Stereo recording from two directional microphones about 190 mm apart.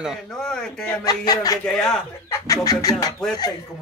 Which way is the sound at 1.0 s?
20° left (ahead or behind).